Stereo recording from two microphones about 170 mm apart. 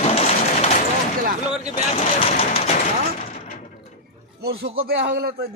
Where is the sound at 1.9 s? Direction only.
35° left (ahead or behind).